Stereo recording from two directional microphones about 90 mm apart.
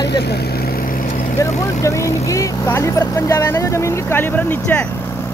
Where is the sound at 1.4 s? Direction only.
35° left (ahead or behind).